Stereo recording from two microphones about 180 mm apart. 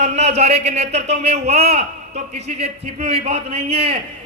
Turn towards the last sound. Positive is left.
turn(degrees=-35)  # may be behind; listen again after turning